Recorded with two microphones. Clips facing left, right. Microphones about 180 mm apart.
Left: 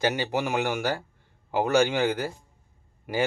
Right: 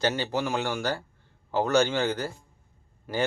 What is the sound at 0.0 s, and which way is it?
Speech, 15° left (ahead or behind).